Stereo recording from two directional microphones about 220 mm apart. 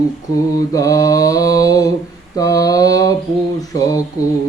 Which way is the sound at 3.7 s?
15° left (ahead or behind).